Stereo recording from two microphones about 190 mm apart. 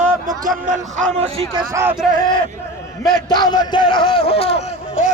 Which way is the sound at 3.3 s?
20° left (ahead or behind).